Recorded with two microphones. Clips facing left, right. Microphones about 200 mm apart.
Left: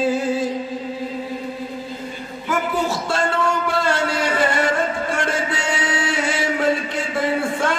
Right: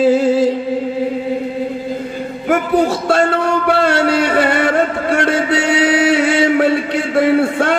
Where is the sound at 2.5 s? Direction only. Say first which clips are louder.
Right 8 dB; 60° right (ahead or behind).